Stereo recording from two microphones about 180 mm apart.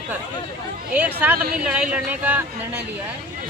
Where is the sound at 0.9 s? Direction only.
10° right (ahead or behind).